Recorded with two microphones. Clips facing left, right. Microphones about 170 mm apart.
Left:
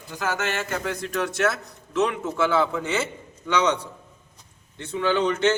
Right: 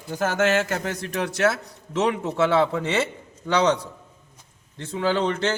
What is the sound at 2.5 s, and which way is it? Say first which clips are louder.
Speech: right 2 dB; 35° right (ahead or behind).